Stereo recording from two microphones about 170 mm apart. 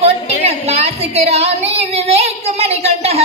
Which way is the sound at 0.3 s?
35° right (ahead or behind).